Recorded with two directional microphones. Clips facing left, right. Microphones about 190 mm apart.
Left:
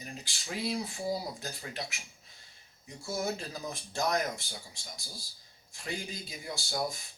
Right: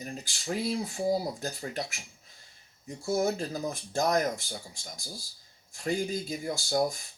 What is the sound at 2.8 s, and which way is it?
Speech, 45° right (ahead or behind).